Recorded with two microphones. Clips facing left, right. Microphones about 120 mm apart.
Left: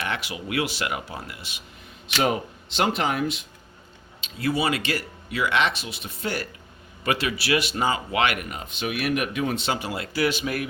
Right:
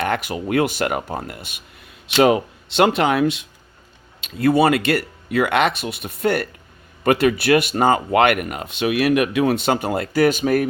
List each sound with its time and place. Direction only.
0.0 s speech: 50° right (ahead or behind)
2.1 s speech: 90° right
4.2 s speech: 55° right (ahead or behind); by 9.6 s 80° right
9.6 s speech: 50° right (ahead or behind)